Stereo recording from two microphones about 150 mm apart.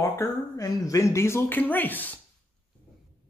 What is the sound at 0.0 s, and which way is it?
Speech, 20° left (ahead or behind).